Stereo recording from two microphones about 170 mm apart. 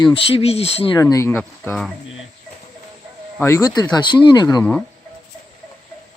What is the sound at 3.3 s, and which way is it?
Speech, 15° left (ahead or behind).